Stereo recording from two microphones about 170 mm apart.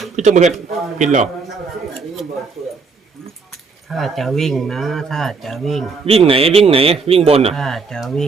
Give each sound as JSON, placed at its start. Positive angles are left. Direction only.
{"t": 0.2, "sound": "speech", "side_deg": -45}
{"t": 3.8, "sound": "speech", "side_deg": 0}
{"t": 6.1, "sound": "a man's voice", "side_deg": -35}
{"t": 7.5, "sound": "speech", "side_deg": 0}